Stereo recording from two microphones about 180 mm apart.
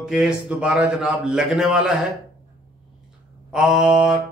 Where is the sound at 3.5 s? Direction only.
Centre (ahead or behind).